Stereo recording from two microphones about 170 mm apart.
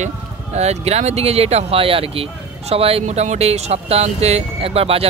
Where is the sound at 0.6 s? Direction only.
40° right (ahead or behind).